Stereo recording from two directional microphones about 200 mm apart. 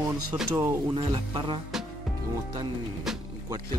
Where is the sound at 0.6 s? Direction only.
10° right (ahead or behind).